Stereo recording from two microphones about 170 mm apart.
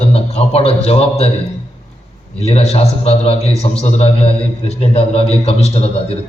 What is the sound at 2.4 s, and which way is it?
A man's voice, 35° left (ahead or behind).